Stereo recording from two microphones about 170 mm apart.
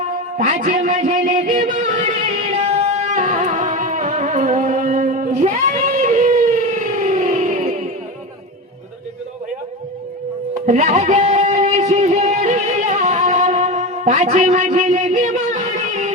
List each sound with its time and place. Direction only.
0.3 s music: 45° right (ahead or behind)
10.7 s music: 45° right (ahead or behind)